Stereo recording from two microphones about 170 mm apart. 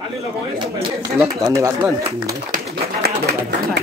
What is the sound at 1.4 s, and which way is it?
Speech, 20° right (ahead or behind).